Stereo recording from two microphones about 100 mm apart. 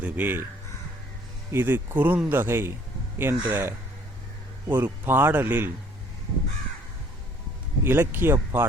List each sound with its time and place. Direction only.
0.0 s speech: 20° right (ahead or behind)
1.5 s speech: 20° right (ahead or behind)
7.9 s speech: 20° right (ahead or behind)